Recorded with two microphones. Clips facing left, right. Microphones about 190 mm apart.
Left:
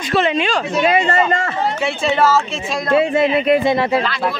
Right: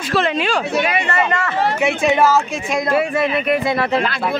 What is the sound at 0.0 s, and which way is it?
Speech, centre (ahead or behind).